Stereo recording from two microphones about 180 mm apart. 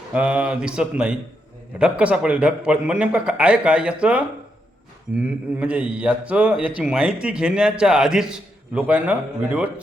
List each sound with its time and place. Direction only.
0.1 s a man's voice: 5° right (ahead or behind)